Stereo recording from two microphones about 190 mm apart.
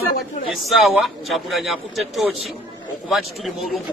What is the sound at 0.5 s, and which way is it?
A man's voice, centre (ahead or behind).